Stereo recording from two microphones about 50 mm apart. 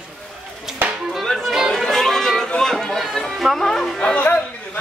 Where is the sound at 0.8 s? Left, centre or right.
Right.